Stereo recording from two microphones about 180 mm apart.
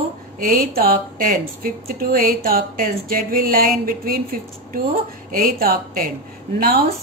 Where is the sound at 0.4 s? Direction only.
55° right (ahead or behind).